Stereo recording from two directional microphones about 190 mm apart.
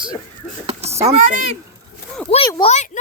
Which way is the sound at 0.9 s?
15° right (ahead or behind).